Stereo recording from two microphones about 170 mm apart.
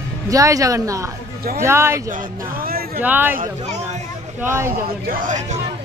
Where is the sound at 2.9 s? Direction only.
10° right (ahead or behind).